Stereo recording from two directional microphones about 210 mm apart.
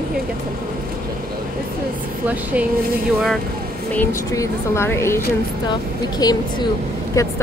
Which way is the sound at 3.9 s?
15° left (ahead or behind).